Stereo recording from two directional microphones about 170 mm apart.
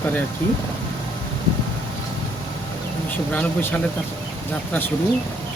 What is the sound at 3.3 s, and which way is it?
Speech, 10° left (ahead or behind).